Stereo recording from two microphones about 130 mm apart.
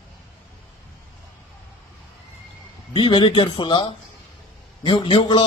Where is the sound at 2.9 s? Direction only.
35° left (ahead or behind).